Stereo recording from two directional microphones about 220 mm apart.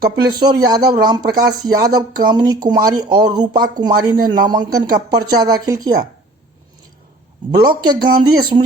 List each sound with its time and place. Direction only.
0.0 s speech: 20° right (ahead or behind)
7.6 s speech: 20° right (ahead or behind)